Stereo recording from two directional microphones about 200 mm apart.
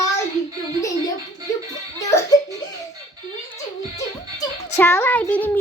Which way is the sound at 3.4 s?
15° left (ahead or behind).